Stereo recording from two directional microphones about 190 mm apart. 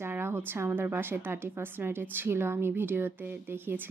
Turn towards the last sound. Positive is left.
turn(degrees=-10)  # may be behind; listen again after turning